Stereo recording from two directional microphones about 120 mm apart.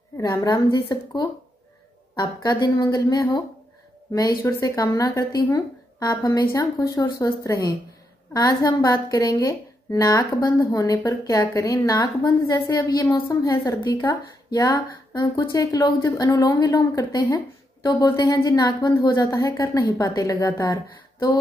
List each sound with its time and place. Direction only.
0.4 s a woman's voice: 35° left (ahead or behind)
4.4 s a woman's voice: 25° left (ahead or behind)